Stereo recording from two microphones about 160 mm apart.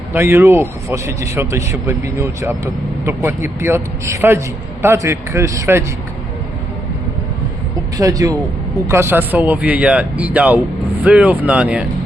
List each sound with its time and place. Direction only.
0.1 s a man's voice: 15° right (ahead or behind)
7.9 s a man's voice: 20° right (ahead or behind); by 11.9 s 5° right (ahead or behind)